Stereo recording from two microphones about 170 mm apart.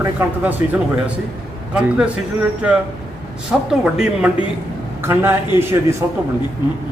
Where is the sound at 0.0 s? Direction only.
10° right (ahead or behind).